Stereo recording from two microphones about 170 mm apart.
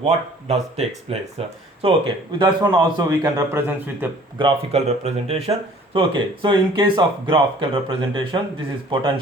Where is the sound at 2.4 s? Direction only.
25° right (ahead or behind); by 4.1 s 10° right (ahead or behind).